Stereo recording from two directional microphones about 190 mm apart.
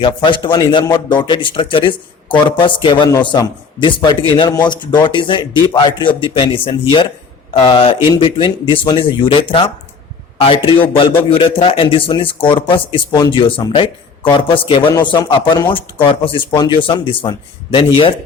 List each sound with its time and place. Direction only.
0.0 s speech: 25° left (ahead or behind)